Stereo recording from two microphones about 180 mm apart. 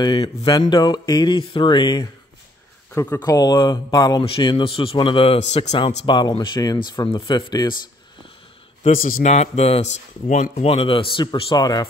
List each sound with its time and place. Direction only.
0.0 s a man's voice: 25° left (ahead or behind)
2.9 s speech: 10° left (ahead or behind)
3.2 s a man's voice: 20° left (ahead or behind)
8.8 s a man's voice: 50° left (ahead or behind)
9.3 s speech: 35° left (ahead or behind)